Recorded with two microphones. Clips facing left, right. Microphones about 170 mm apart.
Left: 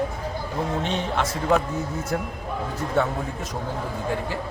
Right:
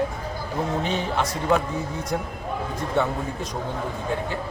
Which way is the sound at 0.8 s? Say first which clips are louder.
Even; centre (ahead or behind).